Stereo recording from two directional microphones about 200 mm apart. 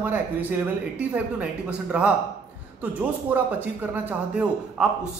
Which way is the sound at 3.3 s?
10° right (ahead or behind).